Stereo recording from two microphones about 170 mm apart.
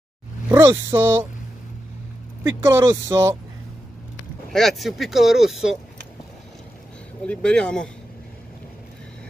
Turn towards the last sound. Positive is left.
turn(degrees=5)  # may be behind; listen again after turning